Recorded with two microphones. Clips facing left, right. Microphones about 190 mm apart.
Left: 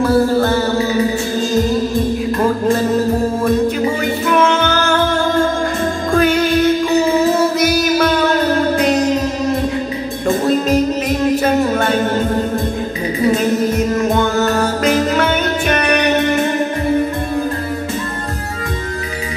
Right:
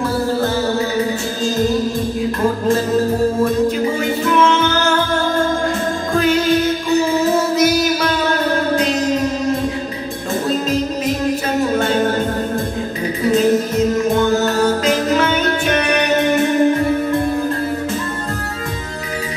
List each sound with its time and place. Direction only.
4.3 s music: 60° left (ahead or behind)